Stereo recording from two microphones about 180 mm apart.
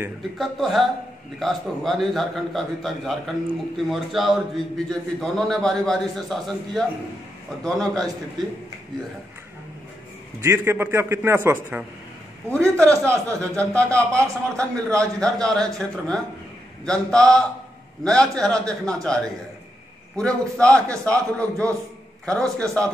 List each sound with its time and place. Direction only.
0.4 s a man's voice: centre (ahead or behind)
10.4 s a man's voice: 15° right (ahead or behind)
12.4 s a man's voice: 10° left (ahead or behind)
20.2 s a man's voice: 5° left (ahead or behind)